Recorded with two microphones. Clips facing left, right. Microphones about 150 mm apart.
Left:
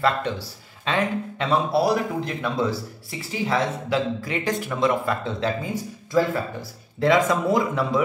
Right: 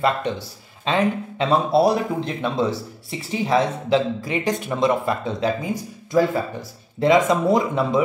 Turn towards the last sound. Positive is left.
turn(degrees=-20)  # may be behind; listen again after turning